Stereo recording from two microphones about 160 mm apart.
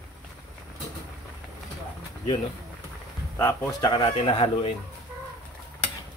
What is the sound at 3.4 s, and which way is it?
A man's voice, 20° left (ahead or behind).